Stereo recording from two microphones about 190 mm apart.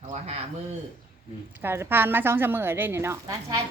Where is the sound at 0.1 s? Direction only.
35° right (ahead or behind).